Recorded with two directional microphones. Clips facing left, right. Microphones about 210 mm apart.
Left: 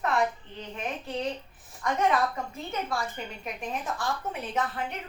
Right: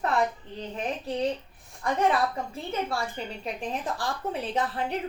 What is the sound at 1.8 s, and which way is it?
A woman's voice, 30° right (ahead or behind).